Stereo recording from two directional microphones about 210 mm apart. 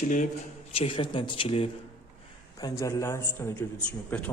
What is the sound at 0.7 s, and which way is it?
A man's voice, 25° left (ahead or behind).